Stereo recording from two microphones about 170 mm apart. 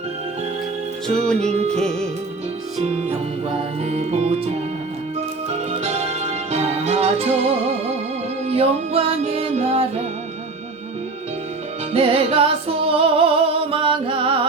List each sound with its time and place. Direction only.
1.0 s music: 5° left (ahead or behind)
1.5 s music: 40° right (ahead or behind)
2.8 s music: 40° right (ahead or behind)
11.9 s music: 35° right (ahead or behind)